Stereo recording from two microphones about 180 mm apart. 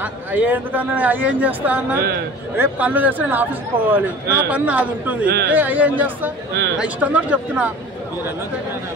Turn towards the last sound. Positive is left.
turn(degrees=-10)  # may be behind; listen again after turning